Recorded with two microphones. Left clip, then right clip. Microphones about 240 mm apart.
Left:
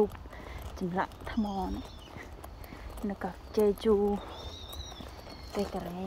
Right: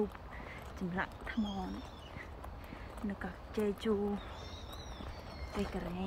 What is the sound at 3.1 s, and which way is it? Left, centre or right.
Speech, left.